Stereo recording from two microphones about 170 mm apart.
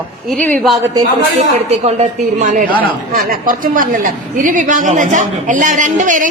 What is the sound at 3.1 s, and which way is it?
A woman's voice, 60° right (ahead or behind).